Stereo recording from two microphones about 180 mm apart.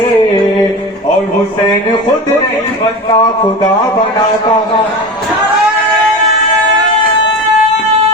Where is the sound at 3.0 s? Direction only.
30° left (ahead or behind).